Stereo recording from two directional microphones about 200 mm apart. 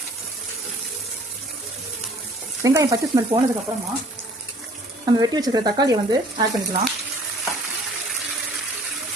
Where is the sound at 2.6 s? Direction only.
15° right (ahead or behind).